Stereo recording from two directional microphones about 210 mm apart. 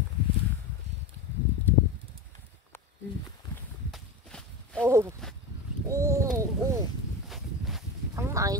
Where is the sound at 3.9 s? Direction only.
5° left (ahead or behind).